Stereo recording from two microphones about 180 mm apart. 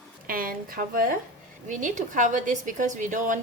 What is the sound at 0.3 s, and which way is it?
A woman's voice, 50° right (ahead or behind).